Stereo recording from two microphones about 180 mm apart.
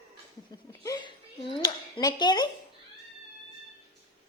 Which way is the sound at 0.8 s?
25° left (ahead or behind).